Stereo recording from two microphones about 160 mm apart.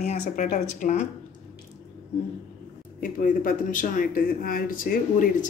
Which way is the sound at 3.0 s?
60° left (ahead or behind).